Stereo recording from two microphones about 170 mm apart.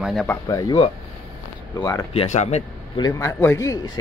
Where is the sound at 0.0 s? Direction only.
Centre (ahead or behind).